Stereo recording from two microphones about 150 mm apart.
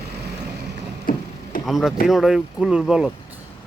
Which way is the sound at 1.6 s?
Centre (ahead or behind).